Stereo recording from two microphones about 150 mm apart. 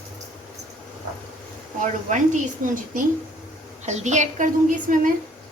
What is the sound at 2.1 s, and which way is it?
Speech, 55° right (ahead or behind).